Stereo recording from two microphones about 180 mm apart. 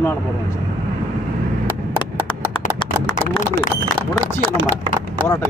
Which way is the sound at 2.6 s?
45° left (ahead or behind).